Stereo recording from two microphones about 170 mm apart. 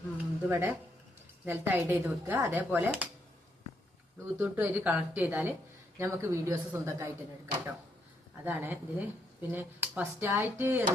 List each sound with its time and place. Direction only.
0.2 s a sound: 10° right (ahead or behind)
1.5 s speech: 15° right (ahead or behind)
4.4 s speech: 10° right (ahead or behind)
8.4 s speech: 10° right (ahead or behind)